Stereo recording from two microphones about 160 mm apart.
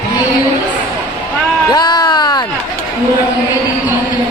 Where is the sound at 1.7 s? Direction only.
25° left (ahead or behind).